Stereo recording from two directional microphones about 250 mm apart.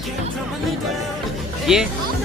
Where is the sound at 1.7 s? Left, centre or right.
Centre.